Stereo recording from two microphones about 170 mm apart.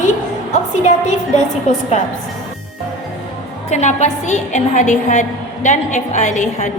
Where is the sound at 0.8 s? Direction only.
45° left (ahead or behind).